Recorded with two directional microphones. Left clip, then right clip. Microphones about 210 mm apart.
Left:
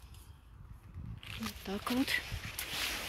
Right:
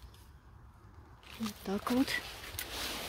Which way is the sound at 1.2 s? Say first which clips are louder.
Right 1 dB; 10° right (ahead or behind).